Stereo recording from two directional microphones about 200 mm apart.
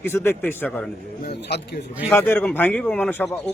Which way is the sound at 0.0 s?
10° left (ahead or behind).